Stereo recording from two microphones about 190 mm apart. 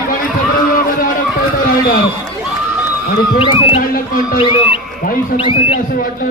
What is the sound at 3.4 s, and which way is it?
Speech, 25° left (ahead or behind).